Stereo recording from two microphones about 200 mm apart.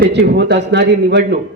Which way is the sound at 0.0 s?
60° right (ahead or behind).